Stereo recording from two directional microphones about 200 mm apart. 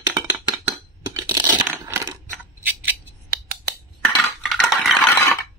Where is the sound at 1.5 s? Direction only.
15° right (ahead or behind).